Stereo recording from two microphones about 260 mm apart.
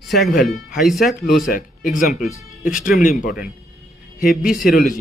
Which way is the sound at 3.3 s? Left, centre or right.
Centre.